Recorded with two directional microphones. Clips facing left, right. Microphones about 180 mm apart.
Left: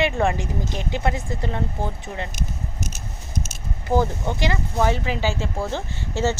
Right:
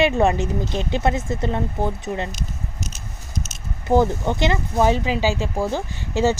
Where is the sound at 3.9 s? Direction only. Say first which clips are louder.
Right 4 dB; 20° right (ahead or behind).